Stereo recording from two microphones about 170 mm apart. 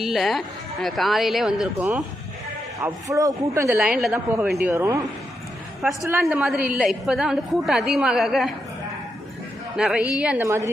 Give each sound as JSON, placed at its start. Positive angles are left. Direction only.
{"t": 0.0, "sound": "a woman's voice", "side_deg": 0}
{"t": 2.7, "sound": "speech", "side_deg": -20}
{"t": 3.8, "sound": "a woman's voice", "side_deg": -5}
{"t": 4.7, "sound": "speech", "side_deg": -15}
{"t": 6.3, "sound": "a woman's voice", "side_deg": 0}
{"t": 9.7, "sound": "a woman's voice", "side_deg": -5}
{"t": 10.4, "sound": "speech", "side_deg": -15}